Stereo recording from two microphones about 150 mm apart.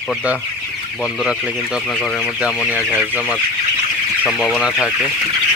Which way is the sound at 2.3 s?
10° right (ahead or behind).